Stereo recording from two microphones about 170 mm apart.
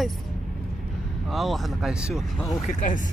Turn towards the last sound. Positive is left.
turn(degrees=50)  # may be behind; listen again after turning